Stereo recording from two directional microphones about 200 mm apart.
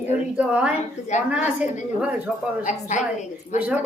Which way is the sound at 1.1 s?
35° left (ahead or behind).